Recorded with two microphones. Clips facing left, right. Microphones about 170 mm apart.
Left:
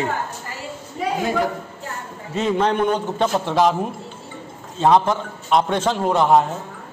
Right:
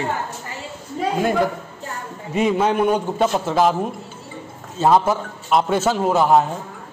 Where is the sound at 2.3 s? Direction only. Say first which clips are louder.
Right 1 dB; 10° right (ahead or behind).